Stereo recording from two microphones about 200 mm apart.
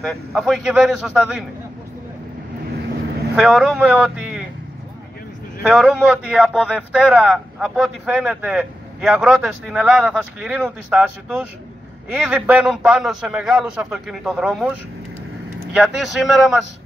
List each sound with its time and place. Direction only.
0.0 s a man's voice: centre (ahead or behind)
3.3 s a man's voice: centre (ahead or behind)
5.6 s a man's voice: 5° right (ahead or behind)